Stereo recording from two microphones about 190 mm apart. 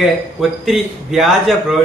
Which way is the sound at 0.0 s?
Centre (ahead or behind).